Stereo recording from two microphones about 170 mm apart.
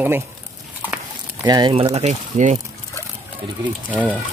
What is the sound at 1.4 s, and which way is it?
Speech, 25° right (ahead or behind).